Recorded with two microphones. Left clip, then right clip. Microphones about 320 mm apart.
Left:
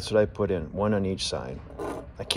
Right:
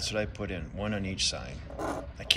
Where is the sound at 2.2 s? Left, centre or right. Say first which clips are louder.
Right 3 dB; centre.